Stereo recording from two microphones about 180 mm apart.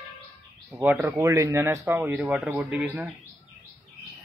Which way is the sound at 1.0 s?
15° right (ahead or behind).